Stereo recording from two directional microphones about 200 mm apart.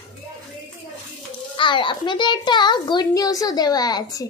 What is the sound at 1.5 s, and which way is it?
A child's voice, 25° left (ahead or behind).